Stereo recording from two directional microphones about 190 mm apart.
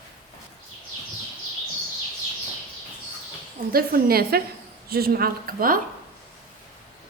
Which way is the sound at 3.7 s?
50° right (ahead or behind).